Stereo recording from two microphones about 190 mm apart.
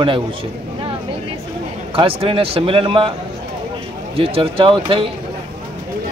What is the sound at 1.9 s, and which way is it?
Speech, 30° right (ahead or behind).